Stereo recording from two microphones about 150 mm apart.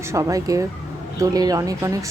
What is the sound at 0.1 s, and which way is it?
Speech, 20° right (ahead or behind).